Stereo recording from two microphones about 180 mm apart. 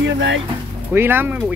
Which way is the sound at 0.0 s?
90° right.